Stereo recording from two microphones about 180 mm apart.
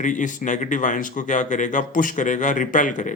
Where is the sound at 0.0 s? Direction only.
45° left (ahead or behind).